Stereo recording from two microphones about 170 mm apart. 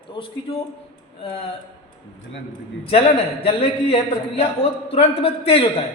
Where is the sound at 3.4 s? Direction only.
35° left (ahead or behind).